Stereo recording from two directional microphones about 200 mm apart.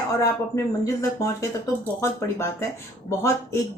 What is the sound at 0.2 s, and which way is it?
Speech, 15° left (ahead or behind).